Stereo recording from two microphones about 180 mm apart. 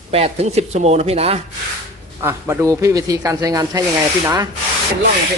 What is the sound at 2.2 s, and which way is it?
Speech, 15° right (ahead or behind).